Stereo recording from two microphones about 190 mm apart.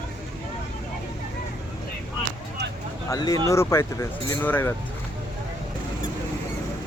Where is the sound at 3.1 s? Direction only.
20° left (ahead or behind).